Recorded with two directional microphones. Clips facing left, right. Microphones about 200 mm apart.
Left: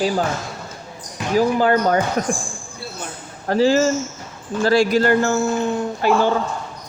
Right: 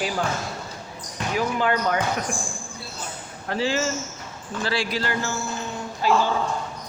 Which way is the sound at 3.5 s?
40° left (ahead or behind).